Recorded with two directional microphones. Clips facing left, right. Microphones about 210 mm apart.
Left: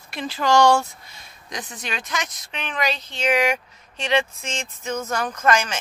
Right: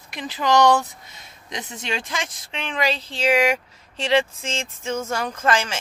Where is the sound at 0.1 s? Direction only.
15° right (ahead or behind).